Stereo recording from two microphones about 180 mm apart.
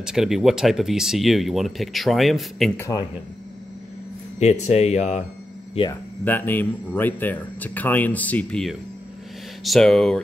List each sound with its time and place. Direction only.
0.0 s speech: centre (ahead or behind)
2.8 s speech: 20° left (ahead or behind)
4.4 s speech: 40° left (ahead or behind)
6.2 s speech: 10° left (ahead or behind)